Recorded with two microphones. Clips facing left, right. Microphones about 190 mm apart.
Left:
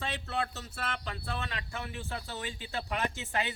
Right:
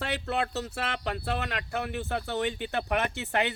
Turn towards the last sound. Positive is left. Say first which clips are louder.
# right 5 dB
turn(degrees=-65)  # may be behind; listen again after turning